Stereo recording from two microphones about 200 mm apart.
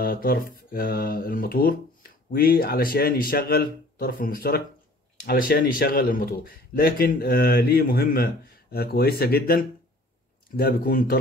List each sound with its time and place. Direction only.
0.0 s speech: 50° left (ahead or behind)